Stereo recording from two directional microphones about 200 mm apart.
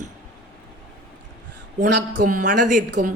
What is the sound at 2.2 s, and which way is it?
Speech, 40° right (ahead or behind).